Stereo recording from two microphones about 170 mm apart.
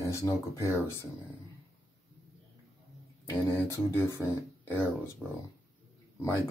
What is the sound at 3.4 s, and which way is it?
Speech, 15° left (ahead or behind).